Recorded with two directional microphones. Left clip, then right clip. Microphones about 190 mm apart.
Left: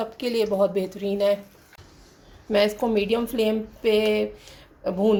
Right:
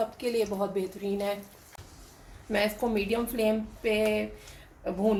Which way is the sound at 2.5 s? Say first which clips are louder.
Left 7 dB; 40° left (ahead or behind).